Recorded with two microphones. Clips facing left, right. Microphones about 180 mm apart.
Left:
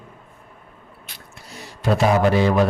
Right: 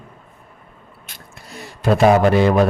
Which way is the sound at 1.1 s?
50° right (ahead or behind).